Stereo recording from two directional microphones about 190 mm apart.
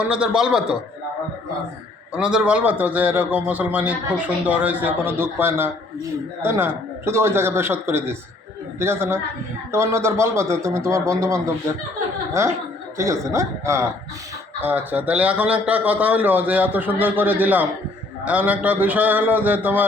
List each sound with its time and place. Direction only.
0.0 s a man's voice: 5° right (ahead or behind)
2.1 s a man's voice: 5° right (ahead or behind)
13.0 s a man's voice: 15° right (ahead or behind)